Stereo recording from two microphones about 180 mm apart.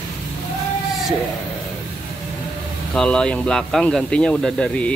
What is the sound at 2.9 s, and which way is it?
Speech, 5° left (ahead or behind).